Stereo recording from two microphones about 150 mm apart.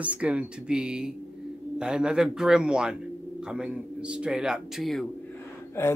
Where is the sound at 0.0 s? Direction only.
10° right (ahead or behind).